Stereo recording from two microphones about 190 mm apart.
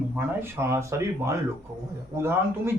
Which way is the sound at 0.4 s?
15° right (ahead or behind).